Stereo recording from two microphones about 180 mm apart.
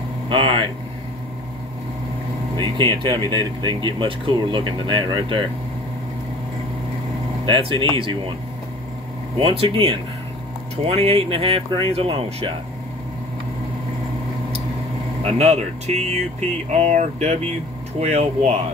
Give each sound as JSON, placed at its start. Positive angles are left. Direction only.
{"t": 0.3, "sound": "speech", "side_deg": -30}
{"t": 2.5, "sound": "speech", "side_deg": -25}
{"t": 7.4, "sound": "speech", "side_deg": -30}
{"t": 9.4, "sound": "speech", "side_deg": -35}
{"t": 15.2, "sound": "speech", "side_deg": -40}